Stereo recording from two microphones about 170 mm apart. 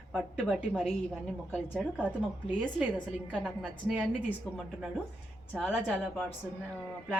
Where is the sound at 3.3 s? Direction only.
5° right (ahead or behind).